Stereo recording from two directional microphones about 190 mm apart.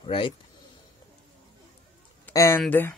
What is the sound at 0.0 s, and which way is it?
Speech, 30° left (ahead or behind).